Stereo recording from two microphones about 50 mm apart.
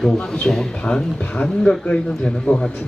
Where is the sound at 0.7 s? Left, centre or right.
Centre.